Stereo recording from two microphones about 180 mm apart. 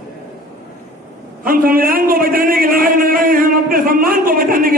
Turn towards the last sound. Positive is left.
turn(degrees=-50)  # may be behind; listen again after turning